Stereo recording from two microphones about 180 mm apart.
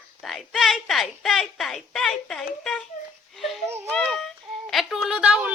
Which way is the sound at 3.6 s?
15° right (ahead or behind).